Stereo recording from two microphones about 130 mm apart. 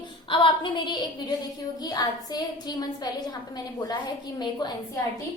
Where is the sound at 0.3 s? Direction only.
40° left (ahead or behind).